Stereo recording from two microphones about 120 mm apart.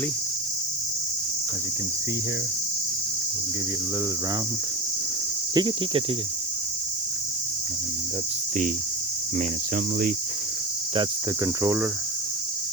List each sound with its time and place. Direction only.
5.5 s speech: 40° right (ahead or behind)
11.6 s speech: 25° right (ahead or behind)